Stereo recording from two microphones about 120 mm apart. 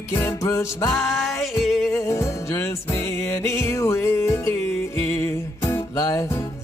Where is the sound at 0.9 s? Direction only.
Centre (ahead or behind).